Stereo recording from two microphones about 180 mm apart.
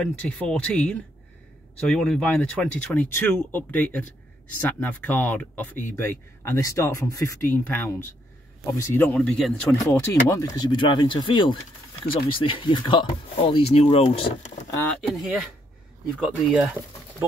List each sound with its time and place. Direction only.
0.0 s speech: 5° left (ahead or behind)
9.8 s speech: 15° left (ahead or behind); by 14.6 s 35° left (ahead or behind)
14.8 s speech: 5° left (ahead or behind)